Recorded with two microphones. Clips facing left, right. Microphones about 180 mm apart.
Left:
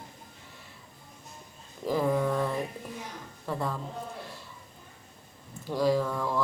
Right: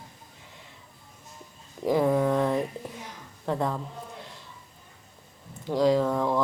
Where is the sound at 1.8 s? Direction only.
15° right (ahead or behind).